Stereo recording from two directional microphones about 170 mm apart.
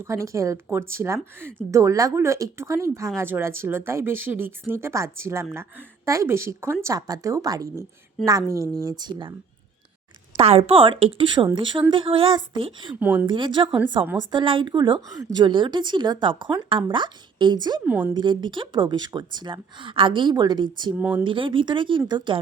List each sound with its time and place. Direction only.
0.0 s a woman's voice: 15° right (ahead or behind)
10.3 s a woman's voice: 35° right (ahead or behind)
13.0 s speech: 10° right (ahead or behind)
13.2 s a woman's voice: 30° right (ahead or behind)
17.8 s speech: 10° right (ahead or behind)
18.1 s a woman's voice: 25° right (ahead or behind)
21.0 s speech: 10° right (ahead or behind)
21.2 s a woman's voice: 30° right (ahead or behind)